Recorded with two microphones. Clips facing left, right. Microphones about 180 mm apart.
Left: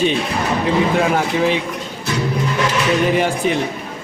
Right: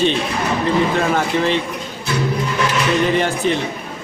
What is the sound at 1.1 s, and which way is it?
Speech, 10° left (ahead or behind).